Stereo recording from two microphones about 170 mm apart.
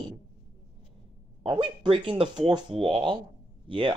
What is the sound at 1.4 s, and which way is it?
Speech, 30° right (ahead or behind).